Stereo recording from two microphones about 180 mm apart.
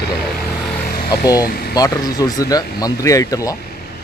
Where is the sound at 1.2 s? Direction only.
20° left (ahead or behind).